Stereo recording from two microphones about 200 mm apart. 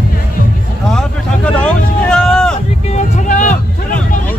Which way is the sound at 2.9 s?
35° left (ahead or behind).